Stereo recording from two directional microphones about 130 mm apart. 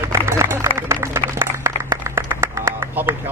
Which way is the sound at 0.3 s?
20° right (ahead or behind).